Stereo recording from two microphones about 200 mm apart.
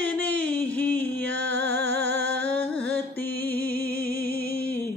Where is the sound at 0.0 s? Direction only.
10° left (ahead or behind).